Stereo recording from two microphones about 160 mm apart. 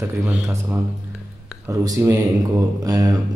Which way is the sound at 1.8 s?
20° right (ahead or behind).